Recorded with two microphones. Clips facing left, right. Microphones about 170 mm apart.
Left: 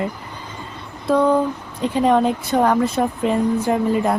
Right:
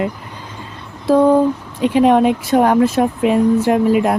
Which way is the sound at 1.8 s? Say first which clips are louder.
Right 5 dB; 70° right (ahead or behind).